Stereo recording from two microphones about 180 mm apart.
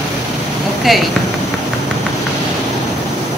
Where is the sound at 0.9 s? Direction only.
Centre (ahead or behind).